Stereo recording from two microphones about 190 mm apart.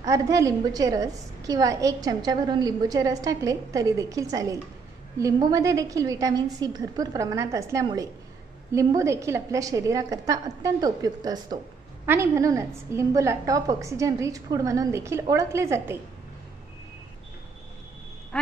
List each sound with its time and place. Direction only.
0.0 s a woman's voice: 15° right (ahead or behind)
18.3 s frog: 5° left (ahead or behind)